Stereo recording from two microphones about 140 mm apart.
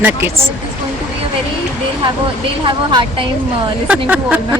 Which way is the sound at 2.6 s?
35° right (ahead or behind).